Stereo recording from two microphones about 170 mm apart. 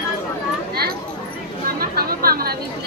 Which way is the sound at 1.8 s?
60° right (ahead or behind).